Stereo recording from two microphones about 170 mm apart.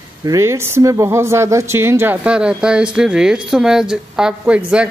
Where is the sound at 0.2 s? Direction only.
20° right (ahead or behind).